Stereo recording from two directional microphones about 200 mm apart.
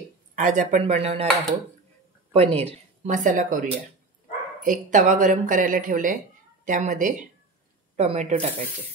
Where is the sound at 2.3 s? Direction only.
30° right (ahead or behind).